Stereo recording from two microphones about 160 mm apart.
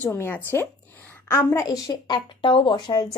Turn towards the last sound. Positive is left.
turn(degrees=30)  # may be behind; listen again after turning